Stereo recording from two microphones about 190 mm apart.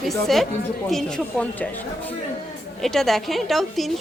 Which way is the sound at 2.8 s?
Centre (ahead or behind).